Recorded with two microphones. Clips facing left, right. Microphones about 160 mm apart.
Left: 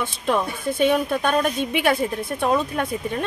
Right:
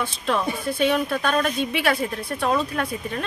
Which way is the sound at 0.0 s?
15° left (ahead or behind).